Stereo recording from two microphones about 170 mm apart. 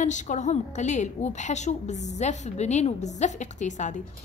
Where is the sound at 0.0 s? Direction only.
45° left (ahead or behind).